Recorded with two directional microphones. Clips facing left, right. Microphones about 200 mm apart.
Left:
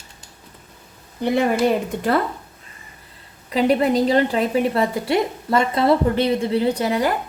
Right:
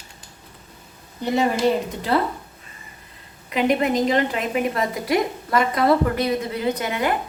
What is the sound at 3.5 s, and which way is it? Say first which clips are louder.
A woman's voice: left 3 dB; 35° left (ahead or behind).